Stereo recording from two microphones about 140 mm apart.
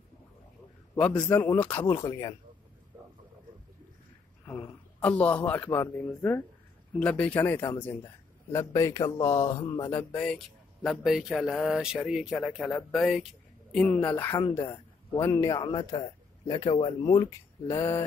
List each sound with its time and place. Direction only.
0.9 s speech: 10° left (ahead or behind); by 2.3 s 25° left (ahead or behind)
4.5 s speech: 10° left (ahead or behind)
7.0 s a man's voice: 10° left (ahead or behind)
10.1 s a man's voice: 5° left (ahead or behind); by 18.0 s 20° left (ahead or behind)